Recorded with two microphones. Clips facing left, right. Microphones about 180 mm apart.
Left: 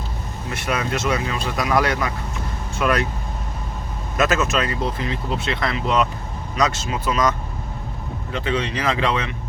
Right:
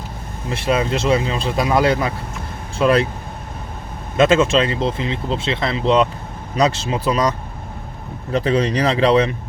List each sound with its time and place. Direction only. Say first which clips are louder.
0.5 s speech: right 5 dB; 30° right (ahead or behind)
4.2 s speech: right 6 dB; 25° right (ahead or behind)